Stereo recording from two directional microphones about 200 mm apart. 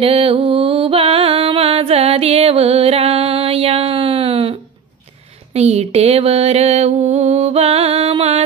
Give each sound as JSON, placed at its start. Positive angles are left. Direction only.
{"t": 0.0, "sound": "music", "side_deg": -25}
{"t": 5.5, "sound": "mantra", "side_deg": -30}